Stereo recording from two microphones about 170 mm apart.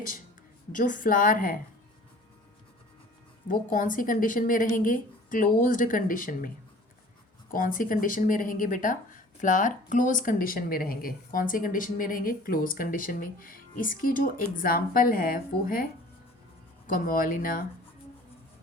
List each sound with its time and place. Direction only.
0.7 s a woman's voice: 50° left (ahead or behind)
3.5 s a woman's voice: 50° left (ahead or behind)
7.5 s a woman's voice: 55° left (ahead or behind)